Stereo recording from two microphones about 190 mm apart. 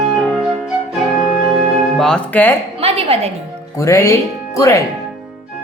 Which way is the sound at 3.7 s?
15° left (ahead or behind).